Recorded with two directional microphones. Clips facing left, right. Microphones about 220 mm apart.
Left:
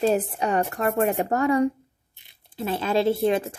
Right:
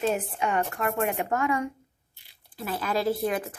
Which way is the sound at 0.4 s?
35° left (ahead or behind).